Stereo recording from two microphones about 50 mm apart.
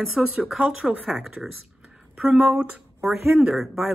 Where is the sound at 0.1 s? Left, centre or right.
Centre.